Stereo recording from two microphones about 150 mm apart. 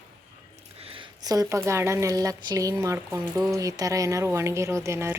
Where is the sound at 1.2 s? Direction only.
25° right (ahead or behind).